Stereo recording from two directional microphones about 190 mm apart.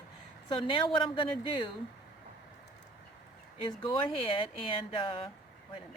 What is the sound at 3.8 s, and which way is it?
Speech, 25° left (ahead or behind).